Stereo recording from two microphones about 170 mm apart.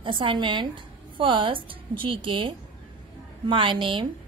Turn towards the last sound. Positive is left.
turn(degrees=-30)  # may be behind; listen again after turning